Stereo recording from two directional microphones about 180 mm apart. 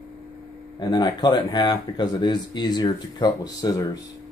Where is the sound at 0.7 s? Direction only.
25° left (ahead or behind).